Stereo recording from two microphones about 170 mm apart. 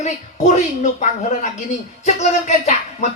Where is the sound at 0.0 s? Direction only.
45° left (ahead or behind).